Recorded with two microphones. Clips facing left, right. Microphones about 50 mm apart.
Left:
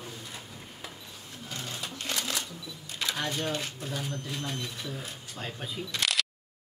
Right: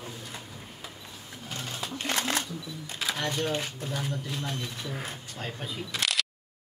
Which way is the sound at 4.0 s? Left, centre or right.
Centre.